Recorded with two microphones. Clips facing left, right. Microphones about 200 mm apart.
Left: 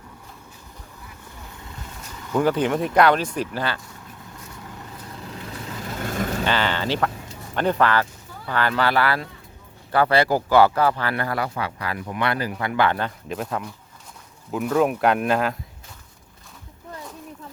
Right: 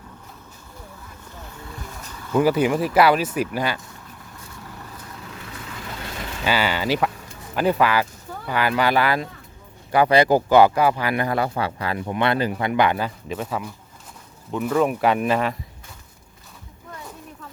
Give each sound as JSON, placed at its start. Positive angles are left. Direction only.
{"t": 1.6, "sound": "vehicle", "side_deg": 15}
{"t": 2.3, "sound": "speech", "side_deg": -10}
{"t": 6.0, "sound": "vehicle", "side_deg": 45}
{"t": 6.4, "sound": "a sound", "side_deg": -10}
{"t": 7.5, "sound": "speech", "side_deg": -5}
{"t": 13.0, "sound": "speech", "side_deg": 0}